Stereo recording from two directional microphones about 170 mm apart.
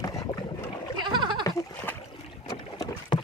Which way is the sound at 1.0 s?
25° right (ahead or behind).